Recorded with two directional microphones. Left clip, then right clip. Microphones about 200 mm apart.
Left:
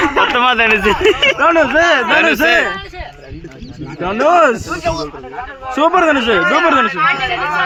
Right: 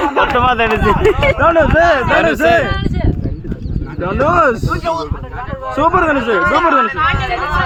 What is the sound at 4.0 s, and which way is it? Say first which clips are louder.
Speech: left 2 dB; 40° left (ahead or behind).